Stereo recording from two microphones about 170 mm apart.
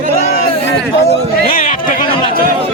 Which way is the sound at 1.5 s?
50° left (ahead or behind).